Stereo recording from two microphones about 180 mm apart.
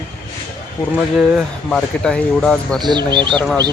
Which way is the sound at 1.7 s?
5° left (ahead or behind).